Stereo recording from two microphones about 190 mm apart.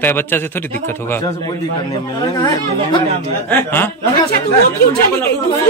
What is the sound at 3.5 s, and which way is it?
Speech, 10° left (ahead or behind).